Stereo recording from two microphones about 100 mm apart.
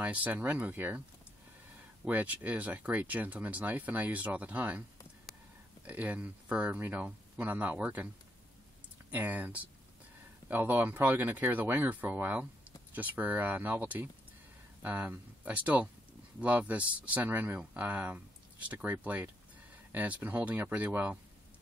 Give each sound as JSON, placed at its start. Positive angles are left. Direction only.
{"t": 0.0, "sound": "speech", "side_deg": -15}
{"t": 2.0, "sound": "speech", "side_deg": -15}
{"t": 5.9, "sound": "speech", "side_deg": -15}
{"t": 9.1, "sound": "speech", "side_deg": -15}